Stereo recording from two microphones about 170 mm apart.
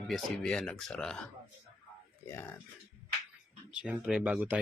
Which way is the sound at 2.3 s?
15° left (ahead or behind).